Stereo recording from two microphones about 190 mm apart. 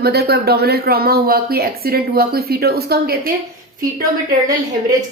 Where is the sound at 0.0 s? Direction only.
55° right (ahead or behind).